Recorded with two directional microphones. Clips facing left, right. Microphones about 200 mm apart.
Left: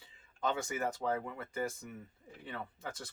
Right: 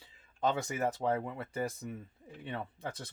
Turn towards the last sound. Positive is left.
turn(degrees=-30)  # may be behind; listen again after turning